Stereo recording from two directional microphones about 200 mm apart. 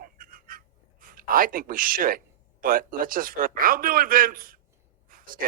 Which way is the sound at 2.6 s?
45° right (ahead or behind).